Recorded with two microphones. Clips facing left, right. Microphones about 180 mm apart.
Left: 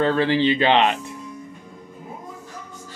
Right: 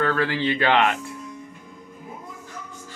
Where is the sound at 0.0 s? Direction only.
25° left (ahead or behind).